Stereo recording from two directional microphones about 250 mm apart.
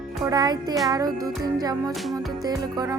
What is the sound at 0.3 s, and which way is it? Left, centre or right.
Music, centre.